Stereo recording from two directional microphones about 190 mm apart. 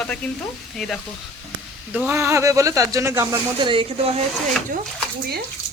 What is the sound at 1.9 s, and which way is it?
Speech, 10° right (ahead or behind).